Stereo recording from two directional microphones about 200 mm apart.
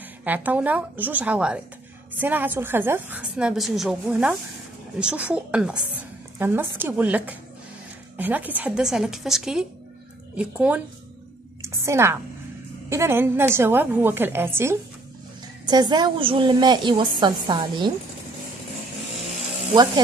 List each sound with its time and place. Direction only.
0.2 s a woman's voice: 10° right (ahead or behind)
11.6 s a sound: 15° right (ahead or behind)
12.9 s a woman's voice: 10° right (ahead or behind)